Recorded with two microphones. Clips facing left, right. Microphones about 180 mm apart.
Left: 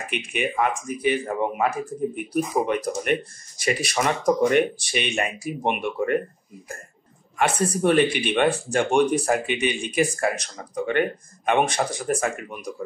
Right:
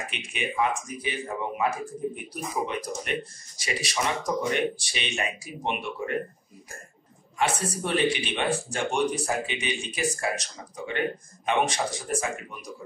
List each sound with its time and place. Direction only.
0.1 s speech: 55° left (ahead or behind)
7.3 s speech: 60° left (ahead or behind)